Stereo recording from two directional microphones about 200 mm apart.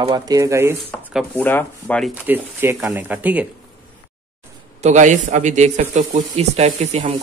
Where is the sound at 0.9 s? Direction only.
5° left (ahead or behind).